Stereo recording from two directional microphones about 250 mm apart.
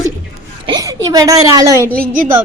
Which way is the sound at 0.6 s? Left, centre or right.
Centre.